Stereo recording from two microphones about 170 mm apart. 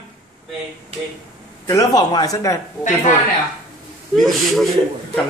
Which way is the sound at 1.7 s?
20° left (ahead or behind).